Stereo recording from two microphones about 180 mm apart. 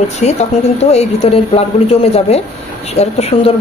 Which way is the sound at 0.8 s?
35° left (ahead or behind).